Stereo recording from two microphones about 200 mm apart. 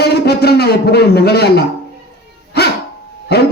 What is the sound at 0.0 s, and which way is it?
A man's voice, 55° left (ahead or behind).